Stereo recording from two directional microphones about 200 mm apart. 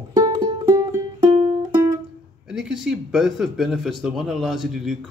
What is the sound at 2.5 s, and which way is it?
Speech, centre (ahead or behind).